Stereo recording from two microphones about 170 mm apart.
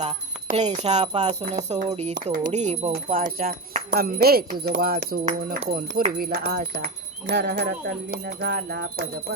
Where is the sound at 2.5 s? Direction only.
40° right (ahead or behind).